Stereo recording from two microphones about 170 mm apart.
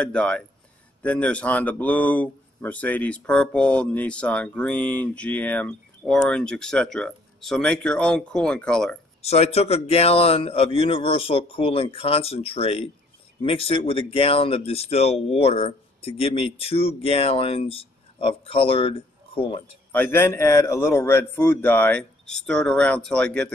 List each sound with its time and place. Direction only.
0.0 s speech: 5° left (ahead or behind)
9.2 s speech: 40° left (ahead or behind)
19.9 s speech: 10° left (ahead or behind)